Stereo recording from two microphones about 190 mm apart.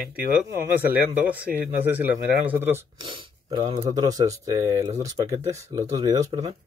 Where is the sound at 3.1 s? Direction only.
25° right (ahead or behind).